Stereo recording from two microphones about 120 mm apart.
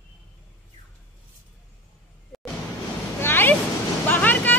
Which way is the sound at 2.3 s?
Centre (ahead or behind).